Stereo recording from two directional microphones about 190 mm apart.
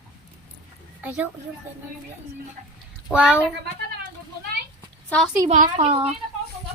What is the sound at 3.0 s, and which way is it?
Speech, 5° right (ahead or behind).